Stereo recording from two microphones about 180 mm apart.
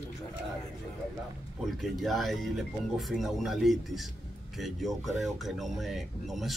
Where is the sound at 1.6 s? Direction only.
Centre (ahead or behind).